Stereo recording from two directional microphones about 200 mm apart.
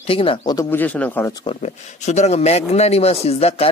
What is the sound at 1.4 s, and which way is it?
Speech, 35° left (ahead or behind).